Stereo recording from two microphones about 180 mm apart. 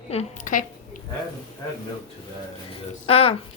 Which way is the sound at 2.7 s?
30° left (ahead or behind).